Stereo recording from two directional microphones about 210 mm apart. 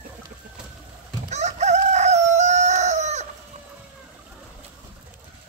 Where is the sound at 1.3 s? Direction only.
35° right (ahead or behind).